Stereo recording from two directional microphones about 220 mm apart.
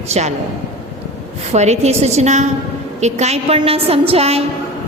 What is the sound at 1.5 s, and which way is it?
A woman's voice, 30° right (ahead or behind).